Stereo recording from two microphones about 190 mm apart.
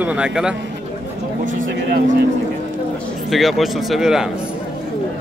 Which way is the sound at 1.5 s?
65° right (ahead or behind).